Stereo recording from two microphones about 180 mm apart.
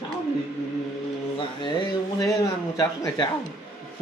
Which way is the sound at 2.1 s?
20° left (ahead or behind).